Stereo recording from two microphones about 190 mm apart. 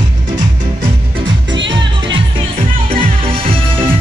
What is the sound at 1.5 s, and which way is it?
Music, 70° right (ahead or behind).